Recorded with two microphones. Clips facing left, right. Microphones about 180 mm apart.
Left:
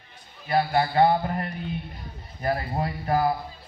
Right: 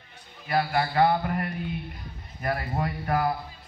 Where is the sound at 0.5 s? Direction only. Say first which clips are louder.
Left 3 dB; 30° left (ahead or behind).